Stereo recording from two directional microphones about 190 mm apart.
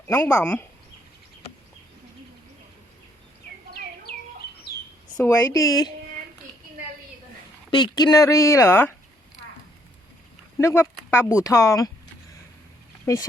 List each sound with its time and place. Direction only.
0.1 s speech: 10° left (ahead or behind)
4.7 s chirp: 55° left (ahead or behind)
5.1 s speech: 10° left (ahead or behind)
7.7 s speech: 25° left (ahead or behind)
10.6 s speech: 15° left (ahead or behind)